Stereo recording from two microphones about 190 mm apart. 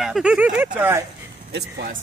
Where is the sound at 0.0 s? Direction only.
5° right (ahead or behind).